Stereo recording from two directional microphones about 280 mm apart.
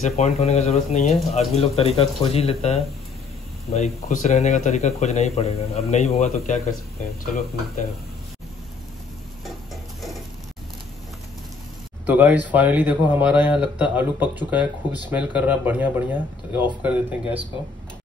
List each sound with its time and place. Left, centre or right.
0.0 s speech: left
12.1 s speech: centre